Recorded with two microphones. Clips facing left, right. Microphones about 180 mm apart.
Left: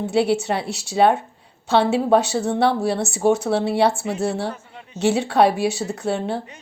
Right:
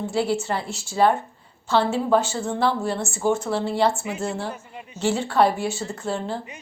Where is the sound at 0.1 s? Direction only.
70° left (ahead or behind).